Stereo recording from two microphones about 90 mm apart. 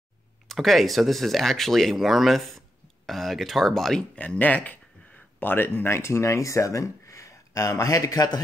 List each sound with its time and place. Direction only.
0.5 s speech: 5° left (ahead or behind)
4.1 s speech: 15° left (ahead or behind); by 8.4 s 45° left (ahead or behind)